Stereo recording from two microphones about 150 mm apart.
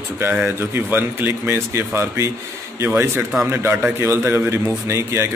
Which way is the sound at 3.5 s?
15° right (ahead or behind).